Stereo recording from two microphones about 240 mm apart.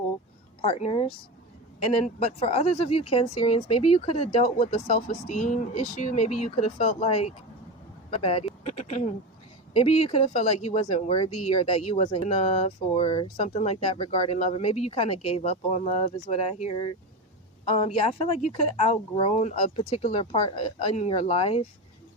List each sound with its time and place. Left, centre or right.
0.6 s speech: left
2.1 s speech: left